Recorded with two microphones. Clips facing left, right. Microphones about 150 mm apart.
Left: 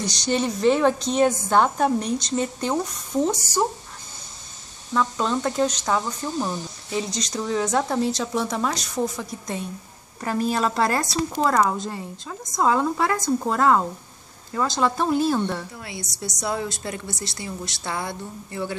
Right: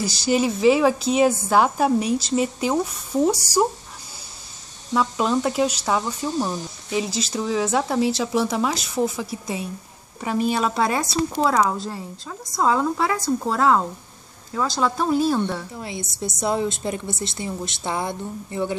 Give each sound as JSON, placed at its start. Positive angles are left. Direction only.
{"t": 0.0, "sound": "a woman's voice", "side_deg": -5}
{"t": 4.9, "sound": "speech", "side_deg": -10}
{"t": 16.3, "sound": "a woman's voice", "side_deg": -20}